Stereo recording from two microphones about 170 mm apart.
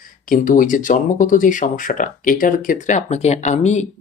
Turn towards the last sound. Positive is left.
turn(degrees=45)  # may be behind; listen again after turning